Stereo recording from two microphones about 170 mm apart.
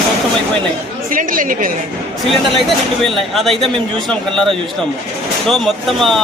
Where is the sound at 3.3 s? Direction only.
Centre (ahead or behind).